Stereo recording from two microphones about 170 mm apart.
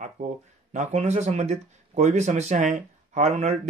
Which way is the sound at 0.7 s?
40° right (ahead or behind).